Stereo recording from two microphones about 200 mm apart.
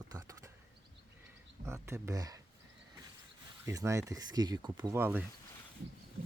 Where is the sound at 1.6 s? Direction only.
15° right (ahead or behind).